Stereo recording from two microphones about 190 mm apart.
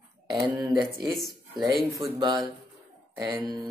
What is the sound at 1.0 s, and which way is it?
Speech, centre (ahead or behind).